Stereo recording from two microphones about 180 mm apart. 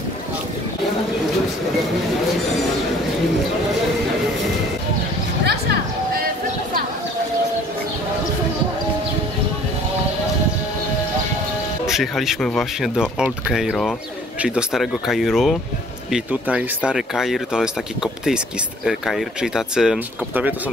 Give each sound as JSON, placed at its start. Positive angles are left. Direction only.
{"t": 5.4, "sound": "vehicle", "side_deg": -65}
{"t": 11.9, "sound": "speech", "side_deg": 0}